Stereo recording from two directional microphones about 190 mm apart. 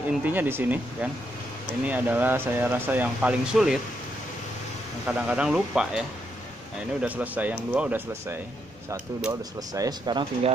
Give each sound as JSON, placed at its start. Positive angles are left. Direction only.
{"t": 0.2, "sound": "speech", "side_deg": -10}
{"t": 5.0, "sound": "speech", "side_deg": -5}